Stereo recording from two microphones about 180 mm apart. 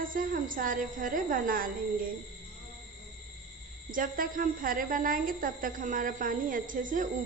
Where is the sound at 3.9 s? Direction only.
50° right (ahead or behind).